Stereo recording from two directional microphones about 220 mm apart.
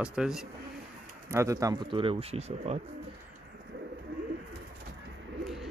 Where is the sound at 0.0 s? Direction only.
5° right (ahead or behind).